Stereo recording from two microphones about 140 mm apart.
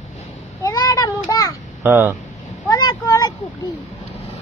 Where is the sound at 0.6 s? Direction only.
25° left (ahead or behind).